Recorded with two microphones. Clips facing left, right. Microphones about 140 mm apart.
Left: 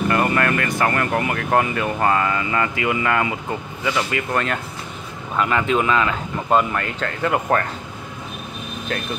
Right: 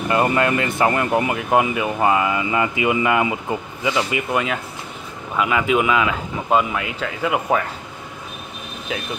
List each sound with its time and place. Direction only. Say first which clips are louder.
0.1 s speech: right 4 dB; 20° right (ahead or behind); by 7.6 s 5° right (ahead or behind)